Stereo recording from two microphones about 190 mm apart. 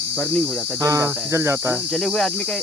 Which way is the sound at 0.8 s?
15° right (ahead or behind).